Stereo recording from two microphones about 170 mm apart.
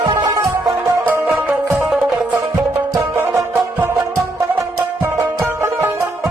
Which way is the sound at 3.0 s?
15° right (ahead or behind).